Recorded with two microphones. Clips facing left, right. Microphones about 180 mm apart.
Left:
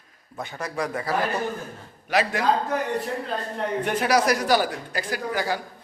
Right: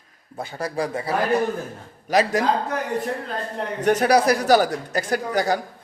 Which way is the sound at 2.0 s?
40° right (ahead or behind).